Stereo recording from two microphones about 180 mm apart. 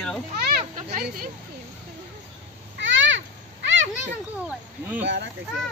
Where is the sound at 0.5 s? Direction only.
55° right (ahead or behind).